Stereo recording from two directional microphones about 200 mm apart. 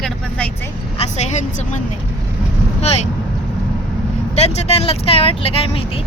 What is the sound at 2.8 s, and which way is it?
Speech, 30° left (ahead or behind).